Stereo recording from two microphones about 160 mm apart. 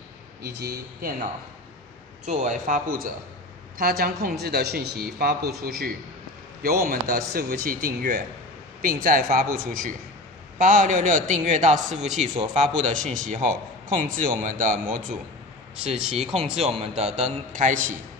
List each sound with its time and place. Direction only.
0.4 s a man's voice: 85° right
2.2 s a man's voice: 50° right (ahead or behind)
3.7 s a man's voice: 70° right (ahead or behind); by 15.0 s 55° right (ahead or behind)
16.3 s a man's voice: 45° right (ahead or behind)